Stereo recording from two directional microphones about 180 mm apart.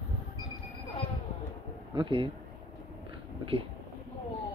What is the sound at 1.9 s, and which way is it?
Speech, 25° right (ahead or behind).